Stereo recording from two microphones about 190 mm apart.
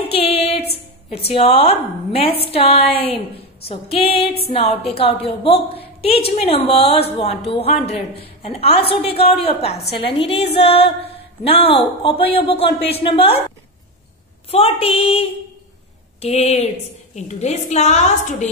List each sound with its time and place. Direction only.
0.1 s a woman's voice: 30° left (ahead or behind)
14.5 s a woman's voice: 30° left (ahead or behind)